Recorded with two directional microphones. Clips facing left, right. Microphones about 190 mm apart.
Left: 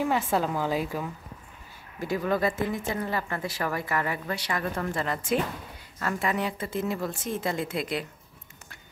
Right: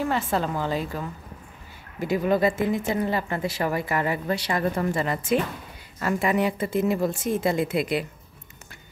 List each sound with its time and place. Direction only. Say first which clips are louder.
0.0 s a woman's voice: right 1 dB; 10° left (ahead or behind)
2.0 s speech: right 4 dB; 20° right (ahead or behind)
4.7 s a woman's voice: right 4 dB; 5° right (ahead or behind)